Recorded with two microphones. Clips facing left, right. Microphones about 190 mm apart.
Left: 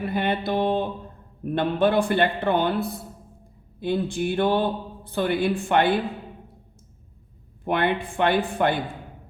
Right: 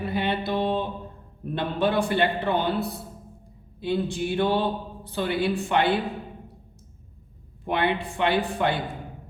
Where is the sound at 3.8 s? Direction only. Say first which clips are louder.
Left 2 dB; 50° left (ahead or behind).